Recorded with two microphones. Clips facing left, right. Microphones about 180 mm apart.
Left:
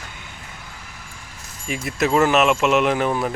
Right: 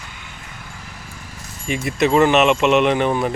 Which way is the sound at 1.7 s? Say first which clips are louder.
Right 3 dB; centre (ahead or behind).